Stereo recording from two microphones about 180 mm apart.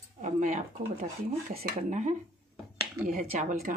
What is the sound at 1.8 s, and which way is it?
Speech, 40° right (ahead or behind).